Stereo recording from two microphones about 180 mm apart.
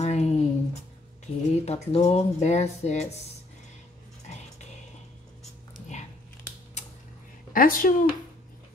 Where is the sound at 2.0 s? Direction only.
35° left (ahead or behind).